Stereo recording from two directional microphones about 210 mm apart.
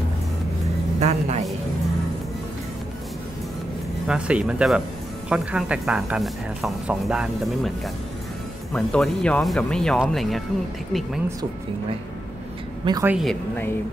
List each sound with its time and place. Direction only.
0.9 s speech: 35° right (ahead or behind)
4.1 s a woman's voice: 5° right (ahead or behind)
12.8 s a woman's voice: 20° right (ahead or behind)
13.1 s a woman's voice: centre (ahead or behind)